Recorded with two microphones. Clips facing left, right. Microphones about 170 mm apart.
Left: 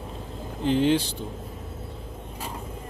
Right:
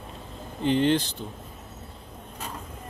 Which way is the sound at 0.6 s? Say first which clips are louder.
Left 1 dB; 5° left (ahead or behind).